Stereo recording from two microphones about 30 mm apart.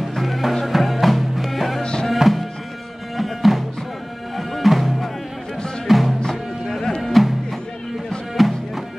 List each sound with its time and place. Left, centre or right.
0.1 s music: centre
1.8 s music: left
2.1 s music: centre
8.4 s music: centre